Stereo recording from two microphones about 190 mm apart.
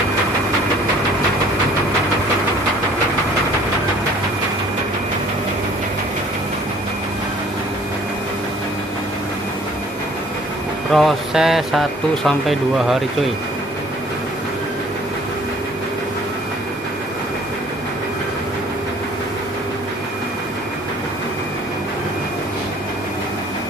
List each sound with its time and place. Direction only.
10.9 s speech: centre (ahead or behind)